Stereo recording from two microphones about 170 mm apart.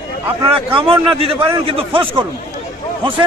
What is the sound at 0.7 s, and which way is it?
A man's voice, 35° right (ahead or behind).